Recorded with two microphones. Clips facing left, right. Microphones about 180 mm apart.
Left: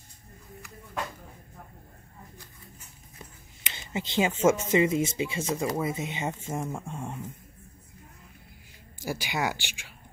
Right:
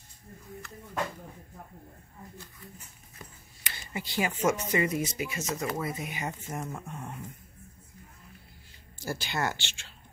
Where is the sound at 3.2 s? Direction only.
20° left (ahead or behind).